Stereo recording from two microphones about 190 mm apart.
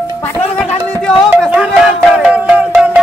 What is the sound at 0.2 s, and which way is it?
Music, 5° left (ahead or behind).